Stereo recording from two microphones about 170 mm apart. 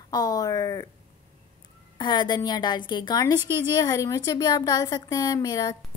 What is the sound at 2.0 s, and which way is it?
A woman's voice, 25° left (ahead or behind).